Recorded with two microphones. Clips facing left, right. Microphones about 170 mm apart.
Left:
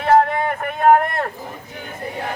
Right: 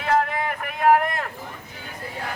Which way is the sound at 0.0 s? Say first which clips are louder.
Left 7 dB; 40° left (ahead or behind).